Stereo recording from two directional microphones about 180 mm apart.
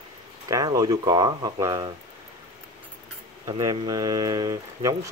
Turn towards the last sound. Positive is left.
turn(degrees=-20)  # may be behind; listen again after turning